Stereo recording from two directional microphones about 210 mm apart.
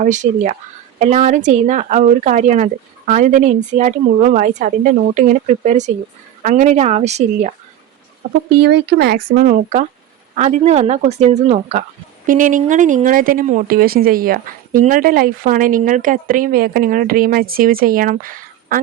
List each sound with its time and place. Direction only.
0.0 s speech: 35° right (ahead or behind)
8.6 s speech: 50° right (ahead or behind)